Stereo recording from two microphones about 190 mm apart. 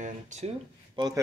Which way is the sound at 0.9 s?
20° right (ahead or behind).